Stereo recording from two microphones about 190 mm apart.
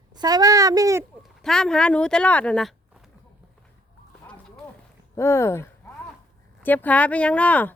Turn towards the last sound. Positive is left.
turn(degrees=5)  # may be behind; listen again after turning